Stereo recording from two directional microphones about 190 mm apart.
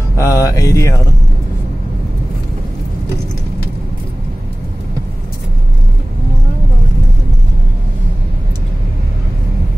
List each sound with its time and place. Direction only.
0.1 s music: 15° left (ahead or behind)